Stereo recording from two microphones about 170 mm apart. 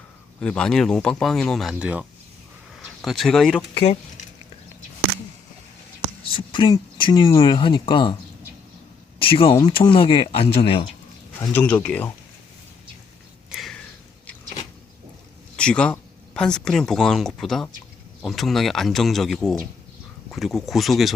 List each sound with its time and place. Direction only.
0.3 s speech: 5° left (ahead or behind)
6.2 s speech: 30° left (ahead or behind)
9.1 s speech: 30° left (ahead or behind)
11.5 s speech: 10° left (ahead or behind)
13.5 s a sound: centre (ahead or behind)
15.5 s speech: 5° left (ahead or behind)